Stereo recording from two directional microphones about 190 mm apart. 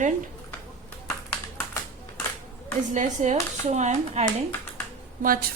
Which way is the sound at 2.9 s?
40° right (ahead or behind).